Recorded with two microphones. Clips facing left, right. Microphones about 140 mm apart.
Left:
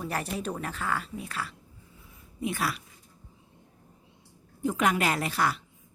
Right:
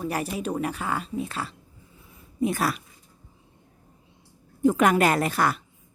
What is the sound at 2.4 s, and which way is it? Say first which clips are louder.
Speech: right 6 dB; 40° right (ahead or behind).